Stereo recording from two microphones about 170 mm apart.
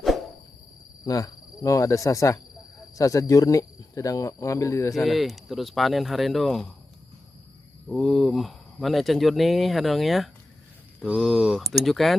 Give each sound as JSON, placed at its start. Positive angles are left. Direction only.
{"t": 1.0, "sound": "cricket", "side_deg": 20}
{"t": 3.0, "sound": "speech", "side_deg": 20}
{"t": 4.9, "sound": "speech", "side_deg": 0}
{"t": 7.9, "sound": "speech", "side_deg": 5}